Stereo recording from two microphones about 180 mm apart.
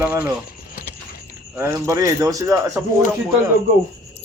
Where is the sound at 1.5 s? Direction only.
15° right (ahead or behind).